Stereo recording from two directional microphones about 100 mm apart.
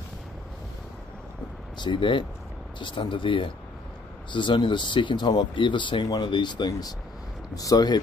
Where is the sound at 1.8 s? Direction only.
55° left (ahead or behind).